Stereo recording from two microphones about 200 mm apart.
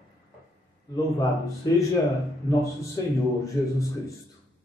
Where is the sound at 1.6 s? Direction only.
20° left (ahead or behind).